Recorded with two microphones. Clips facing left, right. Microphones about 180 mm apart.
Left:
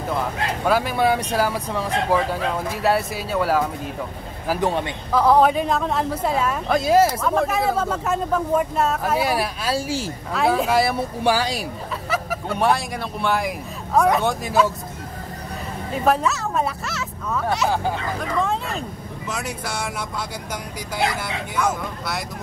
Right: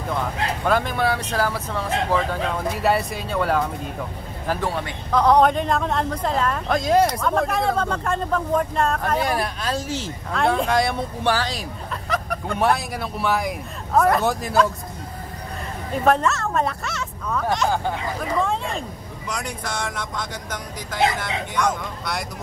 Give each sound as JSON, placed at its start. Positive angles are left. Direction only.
{"t": 0.1, "sound": "speech", "side_deg": 5}
{"t": 2.8, "sound": "speech", "side_deg": 0}
{"t": 4.6, "sound": "a man's voice", "side_deg": 20}
{"t": 5.1, "sound": "speech", "side_deg": 5}
{"t": 15.9, "sound": "speech", "side_deg": 5}